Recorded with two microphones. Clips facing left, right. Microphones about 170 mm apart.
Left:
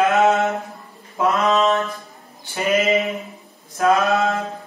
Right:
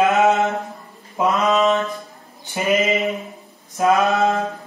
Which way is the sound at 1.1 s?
20° right (ahead or behind).